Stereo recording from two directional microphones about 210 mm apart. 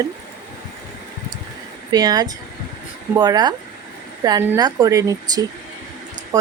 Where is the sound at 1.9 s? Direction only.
20° right (ahead or behind).